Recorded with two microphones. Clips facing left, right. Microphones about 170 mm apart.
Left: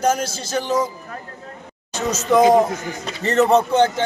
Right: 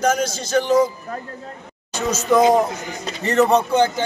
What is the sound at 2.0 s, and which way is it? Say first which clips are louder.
A man's voice: even; centre (ahead or behind).